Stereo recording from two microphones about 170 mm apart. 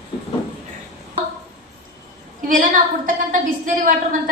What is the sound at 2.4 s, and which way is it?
A woman's voice, 50° right (ahead or behind).